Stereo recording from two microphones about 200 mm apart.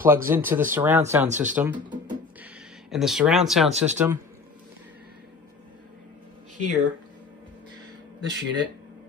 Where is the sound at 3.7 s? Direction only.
35° right (ahead or behind).